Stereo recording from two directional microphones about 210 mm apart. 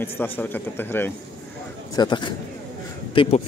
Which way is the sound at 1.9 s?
20° left (ahead or behind).